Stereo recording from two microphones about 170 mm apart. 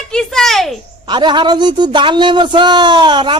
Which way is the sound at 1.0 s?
25° right (ahead or behind).